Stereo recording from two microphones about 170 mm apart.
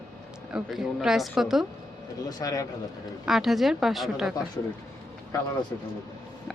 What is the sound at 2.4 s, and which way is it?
Speech, 20° left (ahead or behind).